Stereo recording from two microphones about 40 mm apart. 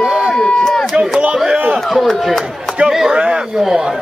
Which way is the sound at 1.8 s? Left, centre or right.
Centre.